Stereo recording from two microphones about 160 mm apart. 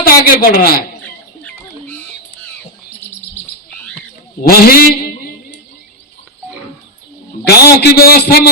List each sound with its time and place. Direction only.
0.0 s a man's voice: 65° left (ahead or behind)
4.4 s a sound: 70° left (ahead or behind)
7.4 s a man's voice: 80° left